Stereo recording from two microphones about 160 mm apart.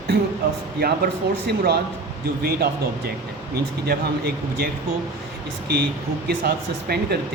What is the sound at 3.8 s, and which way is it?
A man's voice, 75° right (ahead or behind).